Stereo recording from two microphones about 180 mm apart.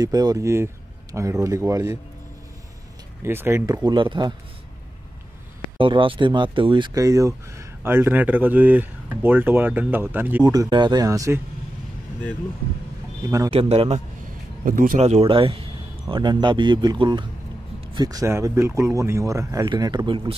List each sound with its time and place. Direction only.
0.0 s speech: 20° right (ahead or behind)
3.3 s speech: 15° right (ahead or behind)
5.8 s speech: 30° right (ahead or behind)
13.2 s speech: 20° right (ahead or behind)
13.5 s a man's voice: 30° right (ahead or behind)
14.6 s speech: 50° right (ahead or behind); by 20.3 s 25° right (ahead or behind)